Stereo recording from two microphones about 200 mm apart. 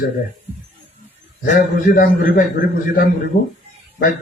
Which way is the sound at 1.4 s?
45° left (ahead or behind).